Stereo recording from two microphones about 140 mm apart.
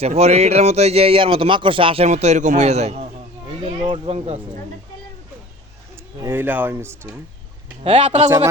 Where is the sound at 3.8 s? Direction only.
35° right (ahead or behind).